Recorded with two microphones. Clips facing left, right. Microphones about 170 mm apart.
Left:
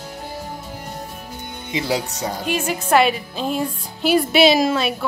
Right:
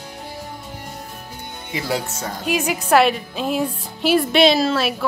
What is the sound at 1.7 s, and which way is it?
Speech, 20° left (ahead or behind).